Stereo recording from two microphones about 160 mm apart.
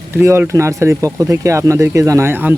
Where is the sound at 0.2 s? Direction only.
15° right (ahead or behind).